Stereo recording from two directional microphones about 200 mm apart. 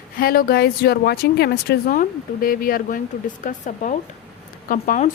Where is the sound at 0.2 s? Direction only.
45° left (ahead or behind).